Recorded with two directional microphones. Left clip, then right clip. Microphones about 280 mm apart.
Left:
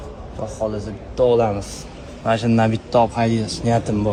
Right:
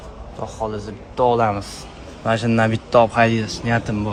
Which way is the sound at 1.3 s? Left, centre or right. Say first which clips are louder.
Left 1 dB; centre.